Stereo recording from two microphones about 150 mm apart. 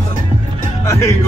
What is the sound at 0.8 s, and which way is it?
Speech, 20° left (ahead or behind).